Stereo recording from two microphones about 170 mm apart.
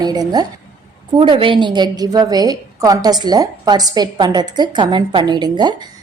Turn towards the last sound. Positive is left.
turn(degrees=-25)  # may be behind; listen again after turning